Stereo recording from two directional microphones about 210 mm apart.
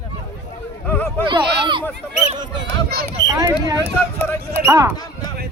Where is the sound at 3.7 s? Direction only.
10° left (ahead or behind).